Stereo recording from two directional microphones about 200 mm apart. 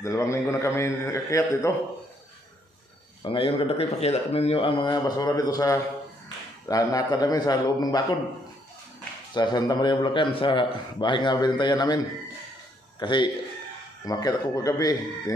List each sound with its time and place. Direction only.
0.0 s a man's voice: 15° left (ahead or behind)
3.2 s speech: 25° left (ahead or behind)
9.3 s speech: 20° left (ahead or behind)
13.0 s a man's voice: 25° left (ahead or behind)